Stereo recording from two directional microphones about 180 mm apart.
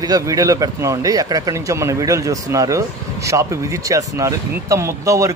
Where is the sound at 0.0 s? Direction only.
20° right (ahead or behind).